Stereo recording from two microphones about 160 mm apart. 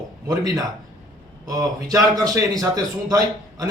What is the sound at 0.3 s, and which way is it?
A man's voice, 20° right (ahead or behind).